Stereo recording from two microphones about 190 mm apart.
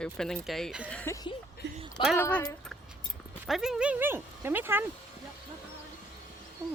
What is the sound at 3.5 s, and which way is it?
Speech, 5° right (ahead or behind).